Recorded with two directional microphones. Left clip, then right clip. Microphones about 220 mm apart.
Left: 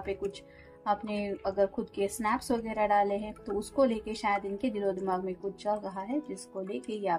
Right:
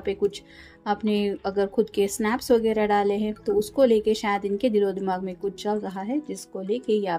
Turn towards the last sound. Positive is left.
turn(degrees=-45)  # may be behind; listen again after turning